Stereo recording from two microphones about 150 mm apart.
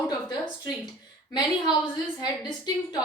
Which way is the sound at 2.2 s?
30° left (ahead or behind).